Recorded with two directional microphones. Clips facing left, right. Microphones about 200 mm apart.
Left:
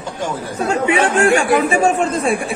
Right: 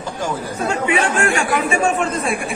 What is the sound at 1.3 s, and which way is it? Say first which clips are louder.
Speech: left 5 dB; 35° left (ahead or behind).